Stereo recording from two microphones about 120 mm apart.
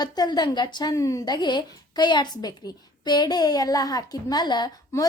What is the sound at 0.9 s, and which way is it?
A woman's voice, 25° left (ahead or behind).